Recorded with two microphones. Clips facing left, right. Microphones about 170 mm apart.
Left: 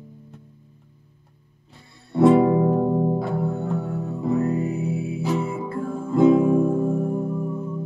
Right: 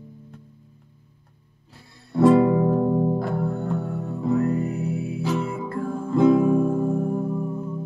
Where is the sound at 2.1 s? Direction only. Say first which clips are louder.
Left 1 dB; 15° left (ahead or behind).